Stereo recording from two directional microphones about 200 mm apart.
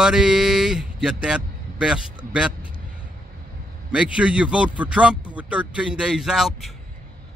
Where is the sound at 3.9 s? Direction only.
5° right (ahead or behind).